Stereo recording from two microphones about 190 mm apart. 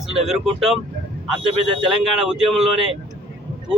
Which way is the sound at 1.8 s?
5° right (ahead or behind).